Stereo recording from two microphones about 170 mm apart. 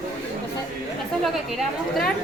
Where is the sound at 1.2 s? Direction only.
Centre (ahead or behind).